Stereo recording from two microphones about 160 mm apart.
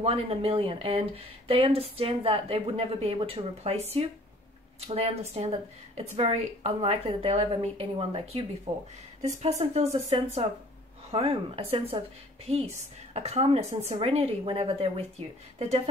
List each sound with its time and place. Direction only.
0.0 s speech: 35° right (ahead or behind)